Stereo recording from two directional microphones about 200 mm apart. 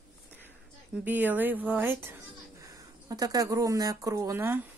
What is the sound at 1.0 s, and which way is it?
Speech, 10° right (ahead or behind).